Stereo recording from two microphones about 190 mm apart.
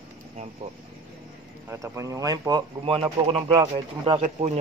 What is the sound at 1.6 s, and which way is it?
Speech, 15° right (ahead or behind).